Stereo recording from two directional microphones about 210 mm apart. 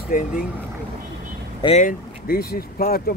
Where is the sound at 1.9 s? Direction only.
45° left (ahead or behind).